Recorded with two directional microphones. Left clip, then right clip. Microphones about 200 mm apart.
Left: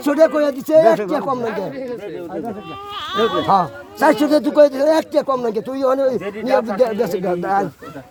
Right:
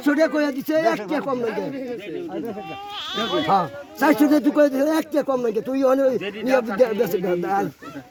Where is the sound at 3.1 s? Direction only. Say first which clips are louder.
Left 6 dB; 55° left (ahead or behind).